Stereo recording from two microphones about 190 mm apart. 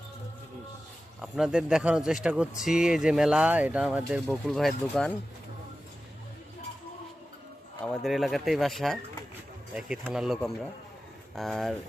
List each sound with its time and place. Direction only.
1.2 s speech: 5° right (ahead or behind)
7.9 s speech: centre (ahead or behind)